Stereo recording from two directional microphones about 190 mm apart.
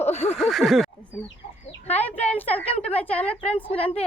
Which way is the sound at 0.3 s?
Centre (ahead or behind).